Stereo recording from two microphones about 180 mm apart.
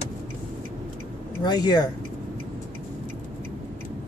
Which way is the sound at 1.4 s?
25° left (ahead or behind).